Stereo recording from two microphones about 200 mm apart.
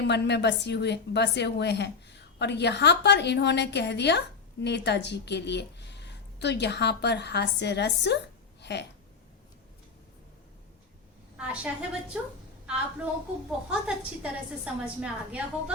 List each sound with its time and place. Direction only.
0.1 s a woman's voice: 60° left (ahead or behind)
11.3 s a woman's voice: 5° right (ahead or behind)
13.7 s a woman's voice: 5° right (ahead or behind)